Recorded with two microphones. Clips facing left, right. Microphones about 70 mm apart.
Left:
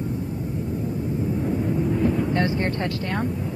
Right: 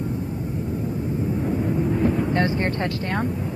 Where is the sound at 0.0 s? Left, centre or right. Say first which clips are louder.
Right 1 dB; right.